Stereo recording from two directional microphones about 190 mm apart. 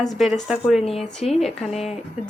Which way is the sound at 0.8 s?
30° left (ahead or behind).